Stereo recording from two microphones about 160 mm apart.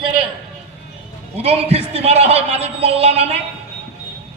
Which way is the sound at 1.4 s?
45° right (ahead or behind).